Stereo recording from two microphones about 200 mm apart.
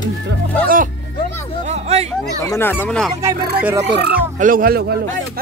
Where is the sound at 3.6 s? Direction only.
15° right (ahead or behind).